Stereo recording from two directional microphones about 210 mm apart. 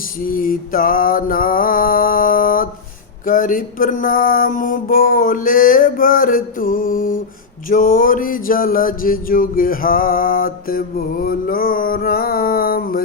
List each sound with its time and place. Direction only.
0.3 s music: 40° left (ahead or behind)
3.2 s mantra: 40° left (ahead or behind)
7.7 s music: 40° left (ahead or behind)